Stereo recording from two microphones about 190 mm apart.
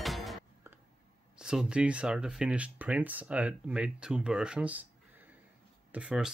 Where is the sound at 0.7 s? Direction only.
15° right (ahead or behind).